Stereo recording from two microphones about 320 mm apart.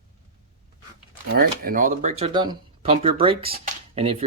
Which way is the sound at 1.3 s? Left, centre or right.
Right.